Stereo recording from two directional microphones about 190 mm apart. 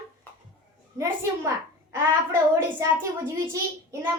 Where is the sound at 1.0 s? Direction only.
15° right (ahead or behind).